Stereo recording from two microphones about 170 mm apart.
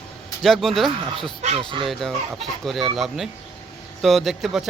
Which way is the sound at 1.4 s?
35° right (ahead or behind).